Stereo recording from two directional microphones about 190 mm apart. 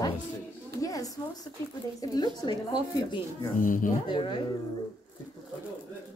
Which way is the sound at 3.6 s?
45° left (ahead or behind).